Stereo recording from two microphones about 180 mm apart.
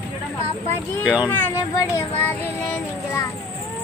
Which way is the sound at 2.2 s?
10° left (ahead or behind).